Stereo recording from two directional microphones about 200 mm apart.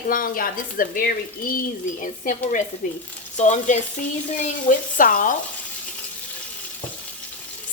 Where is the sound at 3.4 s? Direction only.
35° left (ahead or behind).